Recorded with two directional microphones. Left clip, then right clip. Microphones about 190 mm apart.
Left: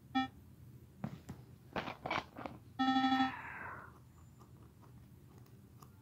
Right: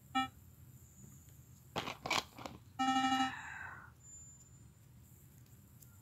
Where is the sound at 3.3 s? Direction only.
10° right (ahead or behind).